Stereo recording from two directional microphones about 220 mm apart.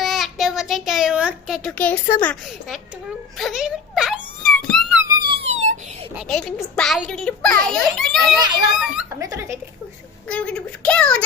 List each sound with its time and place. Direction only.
0.0 s a child's voice: centre (ahead or behind)
3.3 s wail: centre (ahead or behind)
5.0 s a sound: 20° right (ahead or behind)
5.6 s a sound: 35° right (ahead or behind)
6.1 s a child's voice: centre (ahead or behind)
9.2 s speech: 15° right (ahead or behind)
10.2 s a child's voice: 5° left (ahead or behind)